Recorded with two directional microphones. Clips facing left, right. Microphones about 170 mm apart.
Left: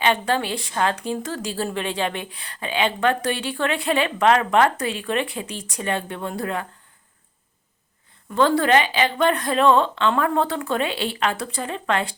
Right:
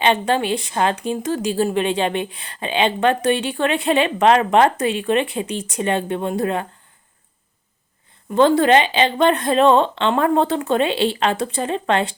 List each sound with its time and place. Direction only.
0.0 s a woman's voice: 20° right (ahead or behind)
8.3 s a woman's voice: 20° right (ahead or behind)